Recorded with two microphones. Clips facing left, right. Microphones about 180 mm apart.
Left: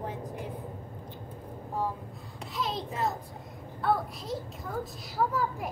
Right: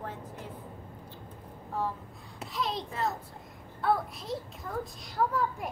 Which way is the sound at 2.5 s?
Centre (ahead or behind).